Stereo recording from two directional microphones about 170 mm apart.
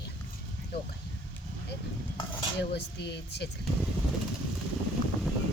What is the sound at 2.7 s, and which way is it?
Speech, 80° left.